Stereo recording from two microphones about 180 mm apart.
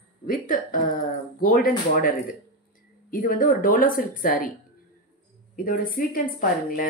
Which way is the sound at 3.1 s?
55° left (ahead or behind).